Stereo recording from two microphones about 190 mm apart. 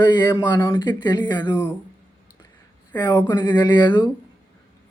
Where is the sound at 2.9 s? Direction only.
20° left (ahead or behind).